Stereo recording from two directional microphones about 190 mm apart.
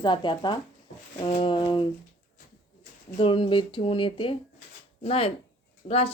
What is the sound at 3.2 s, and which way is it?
Speech, 25° left (ahead or behind).